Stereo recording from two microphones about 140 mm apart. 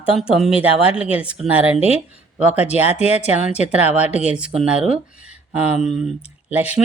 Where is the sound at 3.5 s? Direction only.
10° right (ahead or behind).